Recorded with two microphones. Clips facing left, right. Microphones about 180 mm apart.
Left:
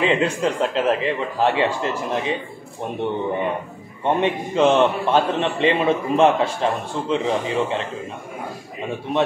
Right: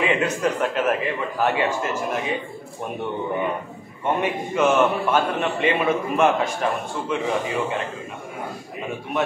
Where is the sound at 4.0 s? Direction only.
30° left (ahead or behind).